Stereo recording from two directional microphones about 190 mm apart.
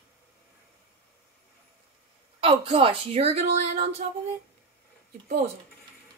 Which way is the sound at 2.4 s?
30° right (ahead or behind).